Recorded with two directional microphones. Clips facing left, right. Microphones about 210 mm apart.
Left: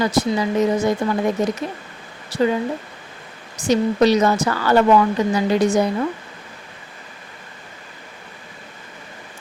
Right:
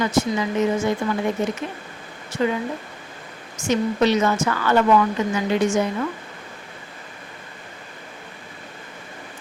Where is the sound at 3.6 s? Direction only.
35° left (ahead or behind).